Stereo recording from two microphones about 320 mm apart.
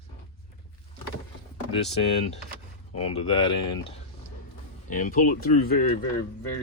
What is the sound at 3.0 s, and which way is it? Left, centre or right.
Speech, centre.